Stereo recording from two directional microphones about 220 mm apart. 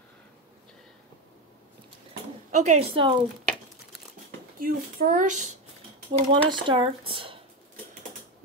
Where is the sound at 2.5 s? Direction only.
30° right (ahead or behind).